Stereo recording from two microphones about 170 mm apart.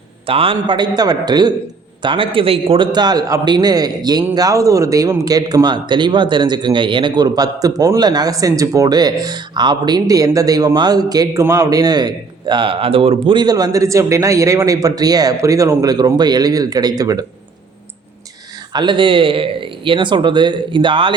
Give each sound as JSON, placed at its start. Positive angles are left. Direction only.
{"t": 0.3, "sound": "speech", "side_deg": -30}
{"t": 18.7, "sound": "speech", "side_deg": -25}